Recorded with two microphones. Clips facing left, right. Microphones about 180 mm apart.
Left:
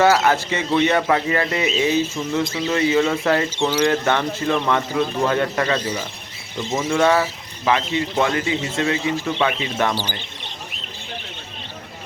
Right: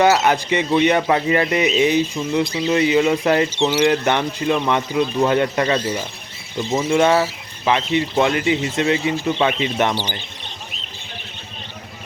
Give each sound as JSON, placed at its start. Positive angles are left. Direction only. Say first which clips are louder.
{"t": 0.0, "sound": "speech", "louder": "right 1 dB", "side_deg": -20}